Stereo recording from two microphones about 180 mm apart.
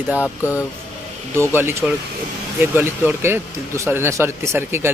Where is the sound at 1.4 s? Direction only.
15° right (ahead or behind).